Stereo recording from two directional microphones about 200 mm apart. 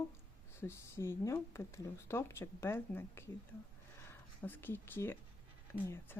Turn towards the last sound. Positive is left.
turn(degrees=10)  # may be behind; listen again after turning